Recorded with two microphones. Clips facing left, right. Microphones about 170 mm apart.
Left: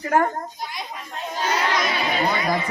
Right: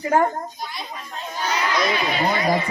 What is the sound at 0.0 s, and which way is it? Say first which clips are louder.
Speech: right 1 dB; 20° right (ahead or behind).